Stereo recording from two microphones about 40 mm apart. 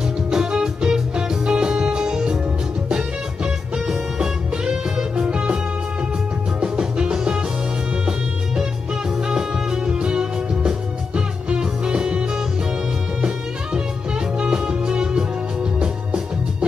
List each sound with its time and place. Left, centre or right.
0.3 s music: centre
4.2 s music: centre
6.6 s music: right
9.3 s music: right
14.4 s music: right